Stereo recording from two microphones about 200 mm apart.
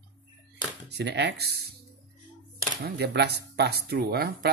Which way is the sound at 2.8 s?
55° right (ahead or behind).